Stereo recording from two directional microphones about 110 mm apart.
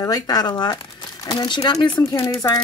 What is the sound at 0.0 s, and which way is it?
Speech, 35° left (ahead or behind).